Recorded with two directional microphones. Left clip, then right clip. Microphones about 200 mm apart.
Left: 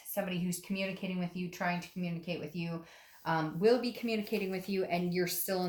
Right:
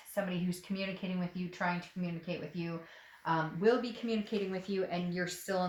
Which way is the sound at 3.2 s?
35° left (ahead or behind).